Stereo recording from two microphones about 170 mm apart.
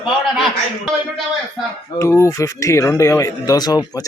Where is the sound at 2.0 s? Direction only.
15° left (ahead or behind).